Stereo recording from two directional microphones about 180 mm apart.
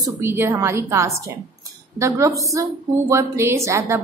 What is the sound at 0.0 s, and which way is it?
A woman's voice, 15° right (ahead or behind).